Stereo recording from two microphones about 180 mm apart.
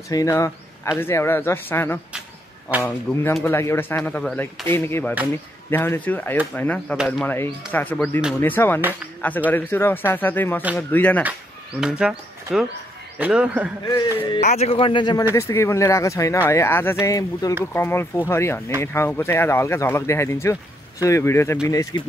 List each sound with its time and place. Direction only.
0.1 s speech: 20° left (ahead or behind)
3.1 s speech: 5° left (ahead or behind)
3.4 s speech: 15° left (ahead or behind)
4.7 s speech: 15° left (ahead or behind)
11.8 s a man's voice: 5° right (ahead or behind)
13.8 s speech: 20° left (ahead or behind)
14.4 s a man's voice: 40° left (ahead or behind)
15.3 s speech: 15° left (ahead or behind)